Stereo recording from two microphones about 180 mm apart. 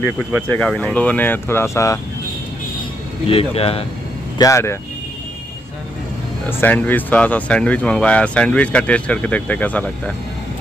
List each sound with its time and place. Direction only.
0.5 s speech: 10° left (ahead or behind)
3.3 s speech: 35° left (ahead or behind)
4.4 s speech: 15° left (ahead or behind)
6.6 s speech: 10° left (ahead or behind)